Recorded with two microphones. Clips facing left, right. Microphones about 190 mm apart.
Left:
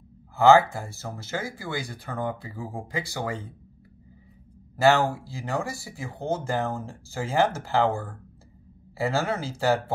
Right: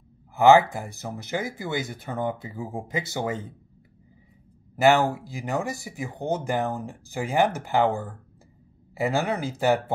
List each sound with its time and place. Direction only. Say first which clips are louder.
0.4 s speech: right 1 dB; 15° right (ahead or behind)
4.7 s speech: right 1 dB; 20° right (ahead or behind)